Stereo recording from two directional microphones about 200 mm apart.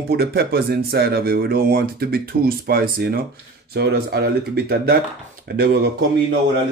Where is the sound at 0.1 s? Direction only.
55° right (ahead or behind).